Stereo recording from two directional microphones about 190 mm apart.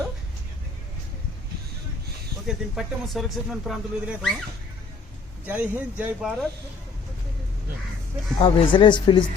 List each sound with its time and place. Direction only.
2.5 s speech: centre (ahead or behind)
5.5 s speech: 10° right (ahead or behind)
8.4 s speech: 30° left (ahead or behind)